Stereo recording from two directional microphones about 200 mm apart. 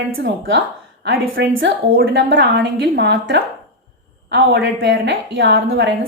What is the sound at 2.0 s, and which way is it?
A woman's voice, 60° right (ahead or behind).